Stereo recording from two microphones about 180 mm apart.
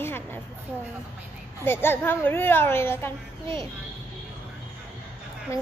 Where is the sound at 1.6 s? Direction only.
10° left (ahead or behind).